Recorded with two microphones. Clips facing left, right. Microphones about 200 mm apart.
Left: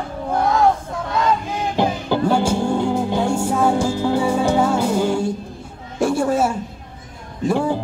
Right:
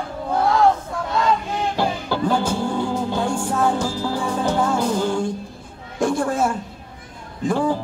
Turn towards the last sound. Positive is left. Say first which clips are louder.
# left 1 dB
turn(degrees=10)  # may be behind; listen again after turning